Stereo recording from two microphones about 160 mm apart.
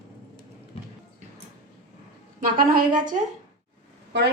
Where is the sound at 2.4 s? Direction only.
60° right (ahead or behind).